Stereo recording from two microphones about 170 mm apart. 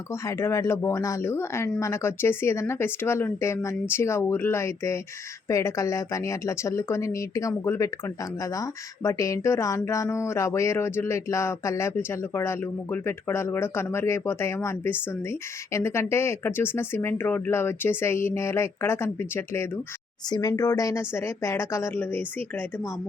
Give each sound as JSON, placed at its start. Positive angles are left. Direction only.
{"t": 0.1, "sound": "speech", "side_deg": 15}